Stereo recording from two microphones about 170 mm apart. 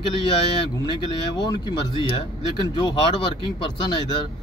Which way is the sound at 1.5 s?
30° left (ahead or behind).